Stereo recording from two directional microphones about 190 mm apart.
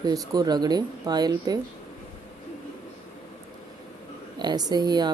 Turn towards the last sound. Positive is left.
turn(degrees=-20)  # may be behind; listen again after turning